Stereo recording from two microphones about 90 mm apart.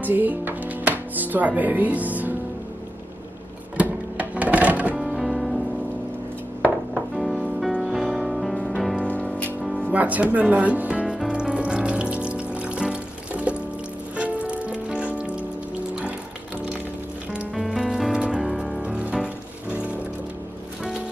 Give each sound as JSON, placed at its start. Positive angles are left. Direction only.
{"t": 0.0, "sound": "speech", "side_deg": -20}
{"t": 3.7, "sound": "a sound", "side_deg": -15}
{"t": 4.9, "sound": "music", "side_deg": 0}
{"t": 6.9, "sound": "music", "side_deg": 0}
{"t": 9.0, "sound": "music", "side_deg": 15}
{"t": 9.9, "sound": "speech", "side_deg": -15}
{"t": 11.1, "sound": "water", "side_deg": -10}
{"t": 14.1, "sound": "music", "side_deg": -15}
{"t": 17.6, "sound": "music", "side_deg": -5}